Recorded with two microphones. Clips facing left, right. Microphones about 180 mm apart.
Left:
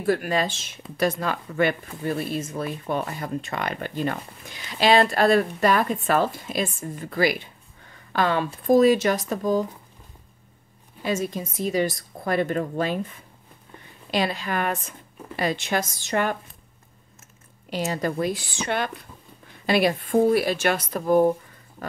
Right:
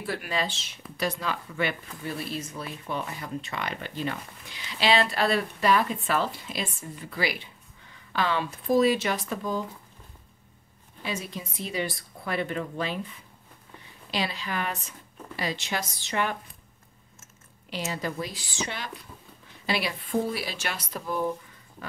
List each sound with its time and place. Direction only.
0.0 s speech: 45° left (ahead or behind)
7.9 s a sound: 50° left (ahead or behind)
8.6 s speech: 45° left (ahead or behind)
11.0 s speech: 45° left (ahead or behind)
17.6 s speech: 45° left (ahead or behind)